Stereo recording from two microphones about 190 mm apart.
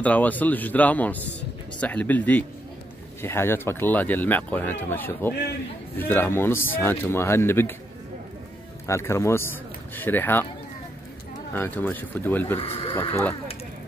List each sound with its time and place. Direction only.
0.0 s speech: 10° left (ahead or behind)
8.8 s speech: 15° left (ahead or behind)
11.5 s speech: 10° left (ahead or behind)
12.5 s speech: 30° left (ahead or behind)
13.1 s speech: 10° left (ahead or behind)